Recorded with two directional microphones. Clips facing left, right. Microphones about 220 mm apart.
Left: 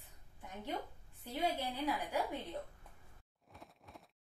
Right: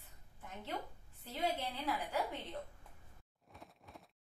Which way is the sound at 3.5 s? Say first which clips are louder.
Even; centre (ahead or behind).